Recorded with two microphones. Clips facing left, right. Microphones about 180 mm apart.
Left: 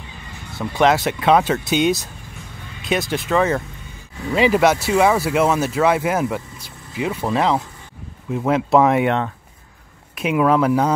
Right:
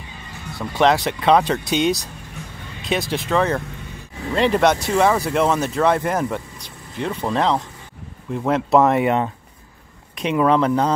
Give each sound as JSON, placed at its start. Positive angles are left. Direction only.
{"t": 0.6, "sound": "speech", "side_deg": 0}